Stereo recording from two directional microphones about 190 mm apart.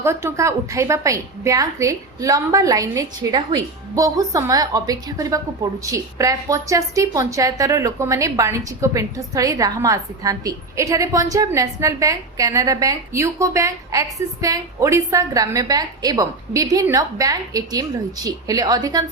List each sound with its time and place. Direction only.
0.0 s a woman's voice: 15° right (ahead or behind)